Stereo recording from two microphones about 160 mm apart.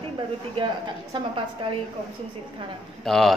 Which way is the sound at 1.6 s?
30° right (ahead or behind).